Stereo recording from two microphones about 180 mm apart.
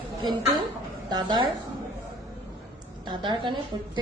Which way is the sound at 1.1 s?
25° right (ahead or behind).